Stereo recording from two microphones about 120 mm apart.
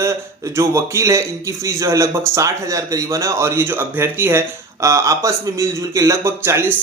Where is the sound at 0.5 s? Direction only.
25° right (ahead or behind).